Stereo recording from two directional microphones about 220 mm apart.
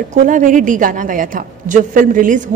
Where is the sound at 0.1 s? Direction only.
35° right (ahead or behind).